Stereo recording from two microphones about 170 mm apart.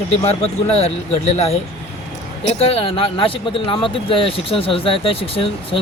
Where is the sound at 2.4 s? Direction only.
35° left (ahead or behind).